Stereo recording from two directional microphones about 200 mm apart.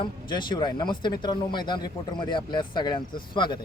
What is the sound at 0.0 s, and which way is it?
Speech, 25° left (ahead or behind).